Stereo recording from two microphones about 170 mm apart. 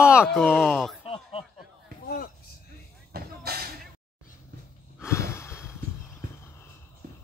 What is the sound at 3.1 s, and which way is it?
Vehicle, 65° right (ahead or behind).